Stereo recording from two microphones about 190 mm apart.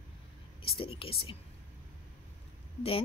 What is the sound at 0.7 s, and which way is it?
Speech, 25° left (ahead or behind).